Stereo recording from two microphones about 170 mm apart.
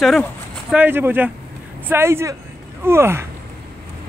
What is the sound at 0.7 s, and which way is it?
Speech, 10° right (ahead or behind).